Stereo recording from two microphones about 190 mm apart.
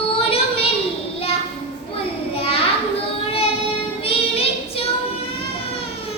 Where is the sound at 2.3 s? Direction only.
30° left (ahead or behind).